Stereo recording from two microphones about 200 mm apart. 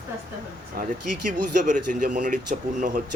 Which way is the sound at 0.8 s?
50° right (ahead or behind).